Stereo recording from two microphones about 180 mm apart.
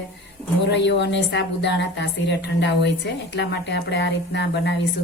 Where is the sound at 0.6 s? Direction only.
75° left (ahead or behind).